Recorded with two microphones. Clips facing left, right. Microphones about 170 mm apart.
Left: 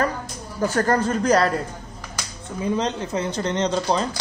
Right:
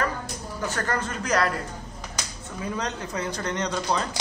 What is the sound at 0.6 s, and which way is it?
Speech, 40° left (ahead or behind).